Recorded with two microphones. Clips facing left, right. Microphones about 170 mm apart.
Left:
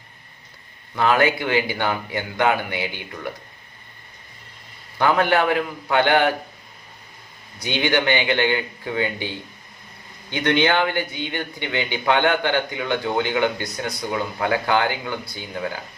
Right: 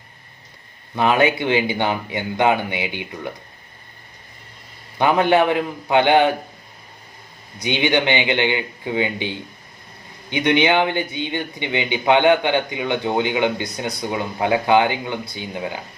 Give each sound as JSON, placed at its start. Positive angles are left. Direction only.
{"t": 0.9, "sound": "speech", "side_deg": -20}
{"t": 4.9, "sound": "speech", "side_deg": -20}
{"t": 7.6, "sound": "speech", "side_deg": -20}